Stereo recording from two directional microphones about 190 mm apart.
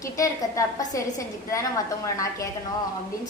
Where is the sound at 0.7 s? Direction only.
15° left (ahead or behind).